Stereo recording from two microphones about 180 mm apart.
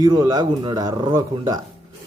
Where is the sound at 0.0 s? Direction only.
20° right (ahead or behind).